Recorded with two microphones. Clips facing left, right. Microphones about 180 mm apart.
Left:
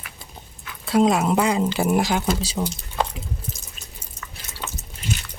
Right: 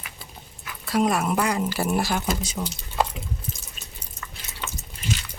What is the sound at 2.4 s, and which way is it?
Speech, 30° left (ahead or behind).